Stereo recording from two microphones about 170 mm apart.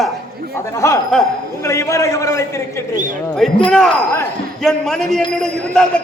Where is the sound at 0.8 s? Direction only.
15° left (ahead or behind).